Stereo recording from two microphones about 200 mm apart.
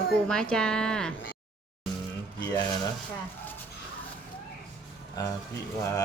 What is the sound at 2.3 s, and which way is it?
Speech, 20° left (ahead or behind).